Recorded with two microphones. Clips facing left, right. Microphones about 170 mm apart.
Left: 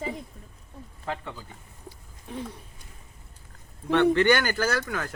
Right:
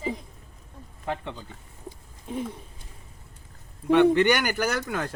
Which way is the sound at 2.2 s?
20° right (ahead or behind).